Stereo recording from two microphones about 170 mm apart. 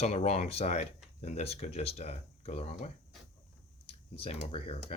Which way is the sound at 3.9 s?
35° left (ahead or behind).